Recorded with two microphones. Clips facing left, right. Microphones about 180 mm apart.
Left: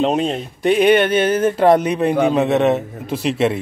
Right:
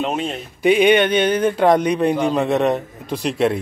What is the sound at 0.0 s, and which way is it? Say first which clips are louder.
Speech: left 5 dB; 35° left (ahead or behind).